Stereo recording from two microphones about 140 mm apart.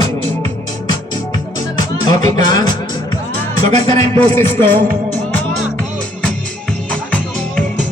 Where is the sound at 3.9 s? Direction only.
20° left (ahead or behind).